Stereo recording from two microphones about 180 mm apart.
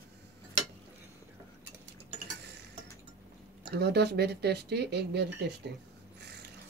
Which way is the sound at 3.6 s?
65° right (ahead or behind).